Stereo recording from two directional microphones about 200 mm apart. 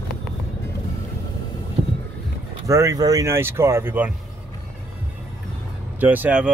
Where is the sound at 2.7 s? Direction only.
15° right (ahead or behind).